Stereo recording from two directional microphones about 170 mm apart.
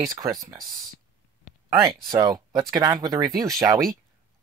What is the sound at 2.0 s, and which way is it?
Speech, 20° right (ahead or behind).